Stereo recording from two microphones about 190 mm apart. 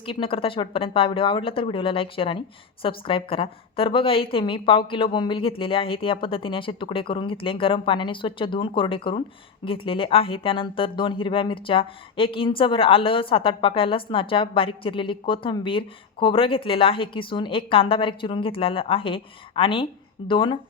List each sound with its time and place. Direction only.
0.0 s a woman's voice: 25° left (ahead or behind)